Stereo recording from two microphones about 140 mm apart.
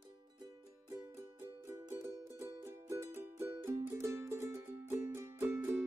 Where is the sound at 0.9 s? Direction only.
20° right (ahead or behind).